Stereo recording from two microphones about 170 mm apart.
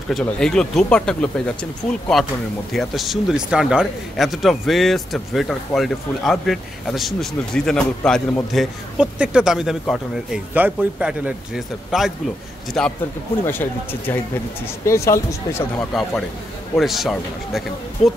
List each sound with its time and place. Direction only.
0.1 s a man's voice: 5° left (ahead or behind)
16.7 s a man's voice: centre (ahead or behind)